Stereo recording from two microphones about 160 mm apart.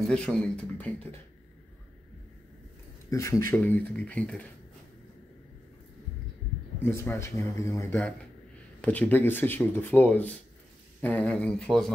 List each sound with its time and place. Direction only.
0.1 s speech: 5° left (ahead or behind)
3.1 s speech: 20° left (ahead or behind)
6.8 s speech: 15° left (ahead or behind)